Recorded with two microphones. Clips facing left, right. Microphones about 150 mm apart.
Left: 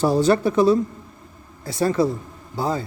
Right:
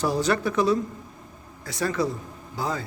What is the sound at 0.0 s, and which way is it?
Speech, 25° left (ahead or behind).